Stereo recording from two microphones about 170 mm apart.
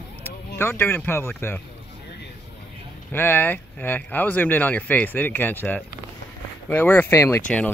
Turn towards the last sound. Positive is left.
turn(degrees=15)  # may be behind; listen again after turning